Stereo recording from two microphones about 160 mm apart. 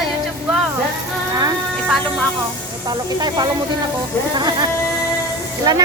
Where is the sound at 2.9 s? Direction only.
25° right (ahead or behind).